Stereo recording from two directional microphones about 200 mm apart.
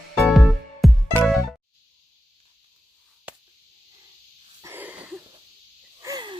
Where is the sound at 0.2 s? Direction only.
Centre (ahead or behind).